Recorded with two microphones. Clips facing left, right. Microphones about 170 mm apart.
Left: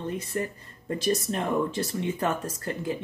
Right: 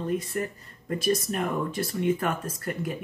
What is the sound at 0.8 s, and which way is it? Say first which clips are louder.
Speech: right 1 dB; 25° left (ahead or behind).